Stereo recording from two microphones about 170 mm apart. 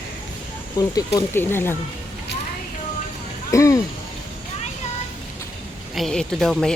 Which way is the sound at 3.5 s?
20° left (ahead or behind).